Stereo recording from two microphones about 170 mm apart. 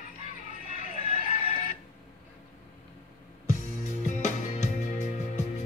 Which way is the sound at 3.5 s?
45° left (ahead or behind).